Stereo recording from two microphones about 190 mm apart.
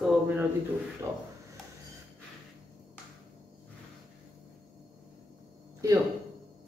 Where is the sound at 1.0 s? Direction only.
15° right (ahead or behind).